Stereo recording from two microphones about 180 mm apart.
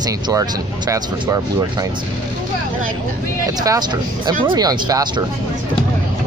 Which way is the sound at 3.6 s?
20° right (ahead or behind).